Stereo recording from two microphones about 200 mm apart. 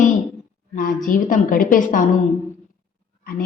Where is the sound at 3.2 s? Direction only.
45° left (ahead or behind).